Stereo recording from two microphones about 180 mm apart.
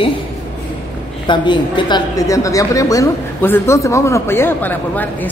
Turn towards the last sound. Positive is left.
turn(degrees=10)  # may be behind; listen again after turning